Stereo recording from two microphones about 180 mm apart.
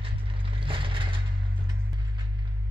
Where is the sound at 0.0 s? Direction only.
30° right (ahead or behind).